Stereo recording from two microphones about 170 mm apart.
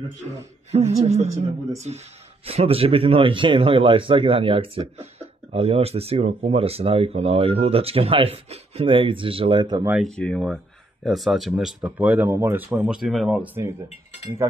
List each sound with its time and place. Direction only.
0.7 s speech: 40° right (ahead or behind)
9.8 s speech: centre (ahead or behind)